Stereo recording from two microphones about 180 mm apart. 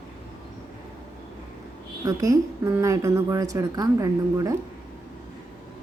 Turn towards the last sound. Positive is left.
turn(degrees=-20)  # may be behind; listen again after turning